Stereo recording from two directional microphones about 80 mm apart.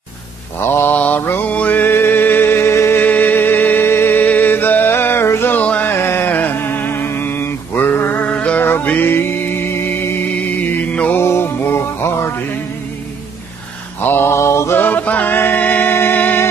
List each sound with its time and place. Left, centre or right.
0.6 s mantra: left
1.2 s music: left
11.1 s music: left
14.0 s mantra: left